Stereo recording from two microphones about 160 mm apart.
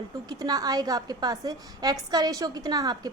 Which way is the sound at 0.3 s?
25° right (ahead or behind).